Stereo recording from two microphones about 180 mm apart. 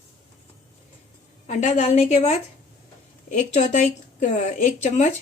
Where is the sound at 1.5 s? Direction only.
40° left (ahead or behind).